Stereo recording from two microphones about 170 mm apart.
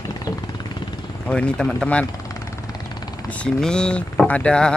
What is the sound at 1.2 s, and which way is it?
Speech, 5° left (ahead or behind).